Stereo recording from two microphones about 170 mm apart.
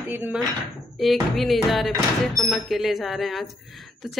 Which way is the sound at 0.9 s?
Centre (ahead or behind).